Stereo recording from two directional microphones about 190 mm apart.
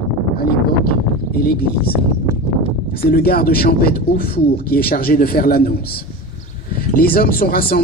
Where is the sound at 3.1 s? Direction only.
55° left (ahead or behind).